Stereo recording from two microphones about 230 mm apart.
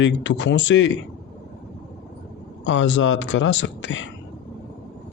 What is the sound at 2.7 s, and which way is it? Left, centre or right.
Speech, left.